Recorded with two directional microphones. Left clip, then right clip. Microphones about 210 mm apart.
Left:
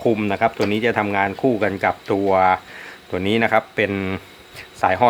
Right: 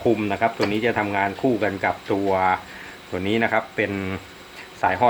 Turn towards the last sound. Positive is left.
turn(degrees=50)  # may be behind; listen again after turning